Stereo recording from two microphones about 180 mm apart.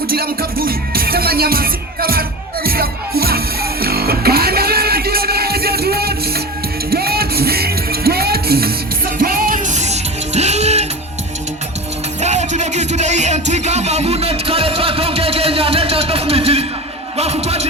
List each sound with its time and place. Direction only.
0.1 s music: 55° right (ahead or behind); by 10.8 s 35° right (ahead or behind)
12.2 s music: 40° right (ahead or behind)
17.2 s a sound: 35° right (ahead or behind)